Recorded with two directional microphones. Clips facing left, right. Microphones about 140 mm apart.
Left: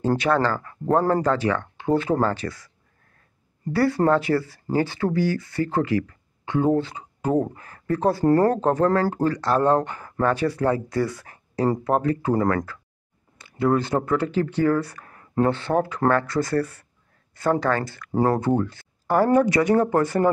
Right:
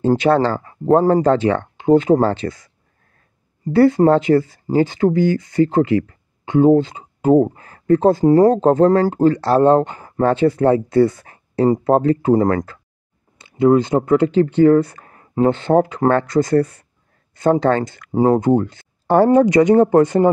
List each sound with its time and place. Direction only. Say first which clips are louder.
0.0 s speech: right 6 dB; 20° right (ahead or behind)
8.5 s speech: right 7 dB; 25° right (ahead or behind)